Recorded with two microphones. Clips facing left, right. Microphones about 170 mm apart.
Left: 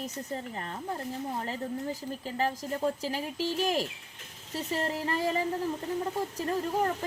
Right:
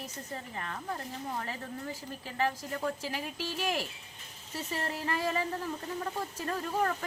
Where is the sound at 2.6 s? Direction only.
25° left (ahead or behind).